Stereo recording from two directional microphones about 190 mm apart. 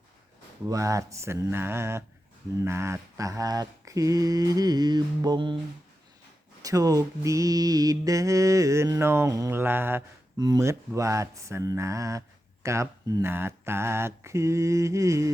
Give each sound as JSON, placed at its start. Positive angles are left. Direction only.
{"t": 0.7, "sound": "mantra", "side_deg": -15}
{"t": 6.6, "sound": "mantra", "side_deg": -20}